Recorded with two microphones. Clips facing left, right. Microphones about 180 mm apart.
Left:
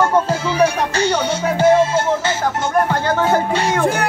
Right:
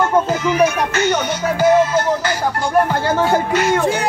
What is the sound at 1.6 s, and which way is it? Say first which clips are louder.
Music: even; 30° left (ahead or behind).